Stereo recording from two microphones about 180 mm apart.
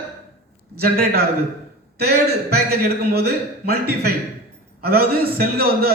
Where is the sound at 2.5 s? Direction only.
60° right (ahead or behind).